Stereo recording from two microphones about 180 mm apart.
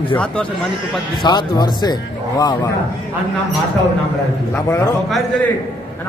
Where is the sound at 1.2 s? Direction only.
25° left (ahead or behind).